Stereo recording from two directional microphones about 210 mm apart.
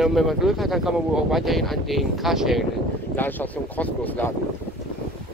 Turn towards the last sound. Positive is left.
turn(degrees=10)  # may be behind; listen again after turning